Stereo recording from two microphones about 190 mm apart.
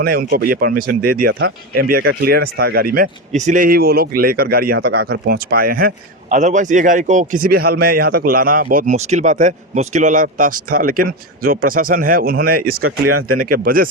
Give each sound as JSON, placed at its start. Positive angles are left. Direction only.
{"t": 0.0, "sound": "speech", "side_deg": -50}